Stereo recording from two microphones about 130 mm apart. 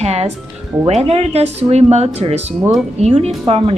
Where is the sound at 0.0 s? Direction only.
55° right (ahead or behind).